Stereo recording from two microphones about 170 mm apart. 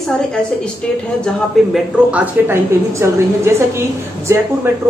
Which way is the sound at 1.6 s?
Centre (ahead or behind).